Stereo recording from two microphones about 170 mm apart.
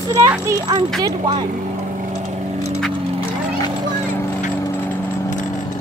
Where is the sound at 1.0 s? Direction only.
25° right (ahead or behind).